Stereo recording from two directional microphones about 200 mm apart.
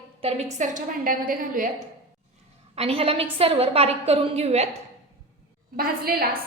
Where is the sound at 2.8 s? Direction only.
30° right (ahead or behind).